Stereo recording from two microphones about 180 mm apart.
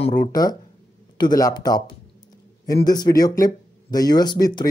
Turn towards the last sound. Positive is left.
turn(degrees=20)  # may be behind; listen again after turning